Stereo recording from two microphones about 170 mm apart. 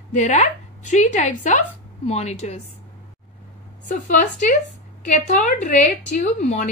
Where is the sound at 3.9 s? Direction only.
50° left (ahead or behind).